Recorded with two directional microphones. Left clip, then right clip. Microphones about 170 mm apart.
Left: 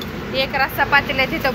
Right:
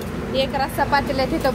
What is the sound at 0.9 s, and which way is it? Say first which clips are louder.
Speech: left 3 dB; 35° right (ahead or behind).